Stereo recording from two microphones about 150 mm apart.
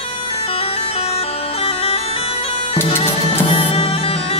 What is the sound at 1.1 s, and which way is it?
Bagpipes, 40° left (ahead or behind).